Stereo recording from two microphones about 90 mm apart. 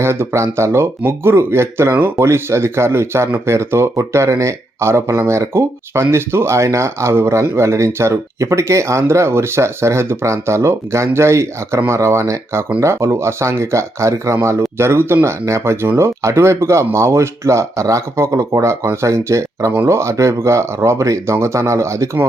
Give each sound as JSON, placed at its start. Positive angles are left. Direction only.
{"t": 0.0, "sound": "speech", "side_deg": -30}